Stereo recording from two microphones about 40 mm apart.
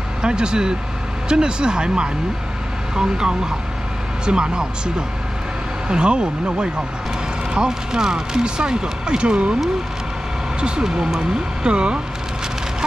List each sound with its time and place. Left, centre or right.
0.2 s speech: right
10.6 s speech: centre